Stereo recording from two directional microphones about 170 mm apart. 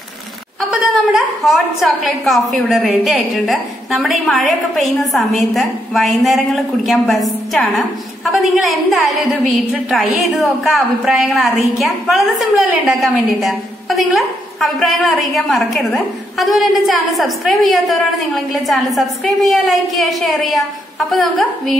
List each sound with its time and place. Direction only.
0.6 s a woman's voice: centre (ahead or behind)